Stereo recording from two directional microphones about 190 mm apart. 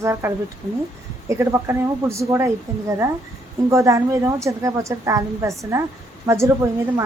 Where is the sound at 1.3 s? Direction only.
15° right (ahead or behind).